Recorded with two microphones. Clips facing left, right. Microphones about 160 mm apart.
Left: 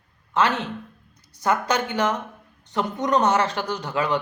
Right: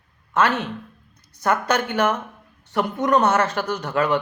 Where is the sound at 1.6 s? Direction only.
15° left (ahead or behind).